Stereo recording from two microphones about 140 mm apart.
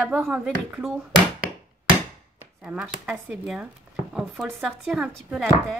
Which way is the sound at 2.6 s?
5° right (ahead or behind).